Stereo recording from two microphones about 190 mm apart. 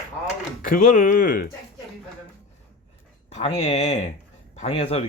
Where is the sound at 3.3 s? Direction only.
35° left (ahead or behind).